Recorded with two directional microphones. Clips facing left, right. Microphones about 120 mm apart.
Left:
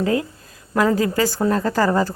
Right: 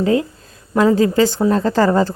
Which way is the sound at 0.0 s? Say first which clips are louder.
Right 4 dB; 25° right (ahead or behind).